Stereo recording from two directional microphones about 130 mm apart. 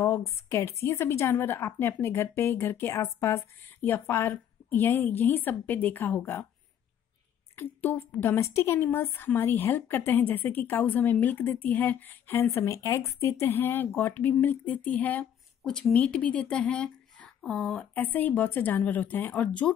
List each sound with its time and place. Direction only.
0.0 s a woman's voice: 20° left (ahead or behind)
7.5 s a woman's voice: 15° left (ahead or behind)
17.9 s a woman's voice: 15° left (ahead or behind)